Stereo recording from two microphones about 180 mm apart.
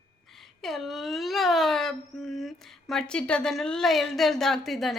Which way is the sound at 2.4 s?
Centre (ahead or behind).